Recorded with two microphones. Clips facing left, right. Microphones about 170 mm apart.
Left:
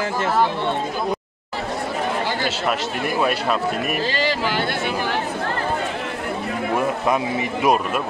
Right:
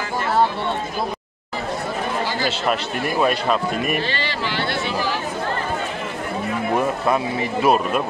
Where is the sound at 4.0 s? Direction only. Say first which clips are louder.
Left 3 dB; 40° left (ahead or behind); by 5.2 s 55° left (ahead or behind).